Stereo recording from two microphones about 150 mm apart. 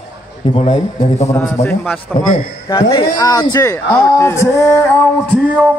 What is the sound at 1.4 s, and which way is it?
Speech, 20° left (ahead or behind).